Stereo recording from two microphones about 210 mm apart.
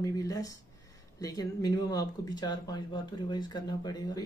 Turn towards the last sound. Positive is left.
turn(degrees=20)  # may be behind; listen again after turning